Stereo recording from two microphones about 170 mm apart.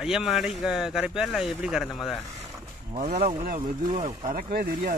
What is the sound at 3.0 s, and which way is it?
Speech, 55° right (ahead or behind).